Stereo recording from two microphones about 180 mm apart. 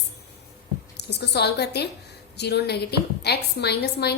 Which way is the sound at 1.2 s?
65° left (ahead or behind).